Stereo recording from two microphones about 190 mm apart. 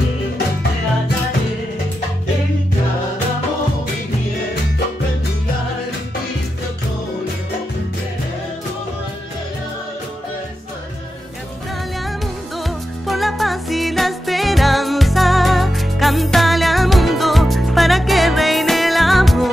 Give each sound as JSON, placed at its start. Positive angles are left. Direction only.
{"t": 13.0, "sound": "music", "side_deg": 0}